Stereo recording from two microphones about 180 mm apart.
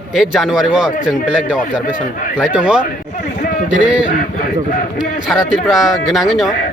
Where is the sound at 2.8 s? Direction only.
50° left (ahead or behind).